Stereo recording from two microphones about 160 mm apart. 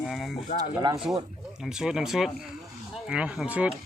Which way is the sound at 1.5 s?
5° right (ahead or behind).